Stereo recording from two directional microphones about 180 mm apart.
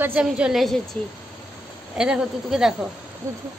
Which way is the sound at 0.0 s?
5° right (ahead or behind).